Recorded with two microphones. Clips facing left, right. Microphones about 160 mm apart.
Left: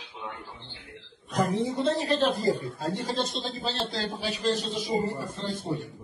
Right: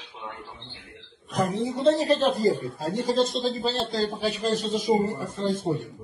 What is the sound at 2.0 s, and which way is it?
A man's voice, 40° right (ahead or behind).